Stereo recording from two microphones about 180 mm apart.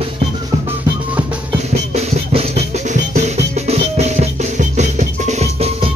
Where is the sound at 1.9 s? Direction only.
35° right (ahead or behind).